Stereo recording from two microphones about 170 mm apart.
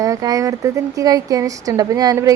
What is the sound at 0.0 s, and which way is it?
A woman's voice, 20° right (ahead or behind).